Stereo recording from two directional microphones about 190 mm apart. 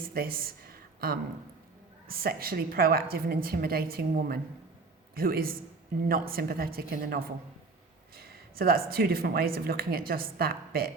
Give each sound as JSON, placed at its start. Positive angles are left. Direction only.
{"t": 0.0, "sound": "speech", "side_deg": -50}